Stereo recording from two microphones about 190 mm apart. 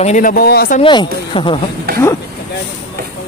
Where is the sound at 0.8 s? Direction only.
25° left (ahead or behind).